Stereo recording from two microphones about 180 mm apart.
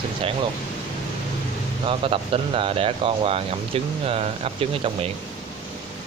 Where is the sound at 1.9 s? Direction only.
30° right (ahead or behind).